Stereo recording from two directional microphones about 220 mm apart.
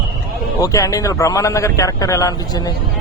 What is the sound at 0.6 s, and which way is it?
A man's voice, 15° left (ahead or behind).